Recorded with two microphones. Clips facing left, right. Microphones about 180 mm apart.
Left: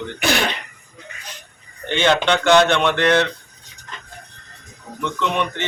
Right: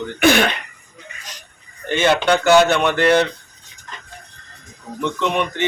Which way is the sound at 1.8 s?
10° right (ahead or behind).